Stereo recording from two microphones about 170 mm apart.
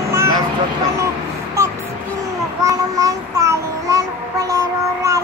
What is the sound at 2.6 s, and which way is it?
Child singing, 20° right (ahead or behind).